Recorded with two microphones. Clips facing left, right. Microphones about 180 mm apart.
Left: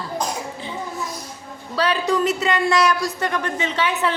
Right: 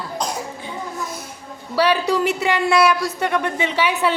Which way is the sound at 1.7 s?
10° right (ahead or behind).